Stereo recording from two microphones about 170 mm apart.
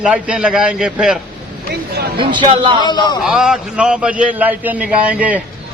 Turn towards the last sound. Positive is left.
turn(degrees=-10)  # may be behind; listen again after turning